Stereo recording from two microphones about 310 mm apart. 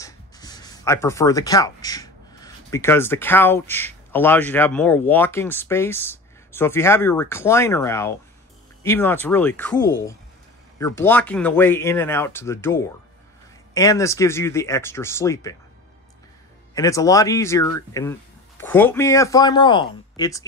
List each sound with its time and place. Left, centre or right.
0.0 s speech: centre
16.7 s speech: centre